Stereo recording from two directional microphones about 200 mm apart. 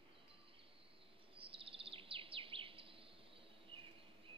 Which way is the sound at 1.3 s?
25° right (ahead or behind).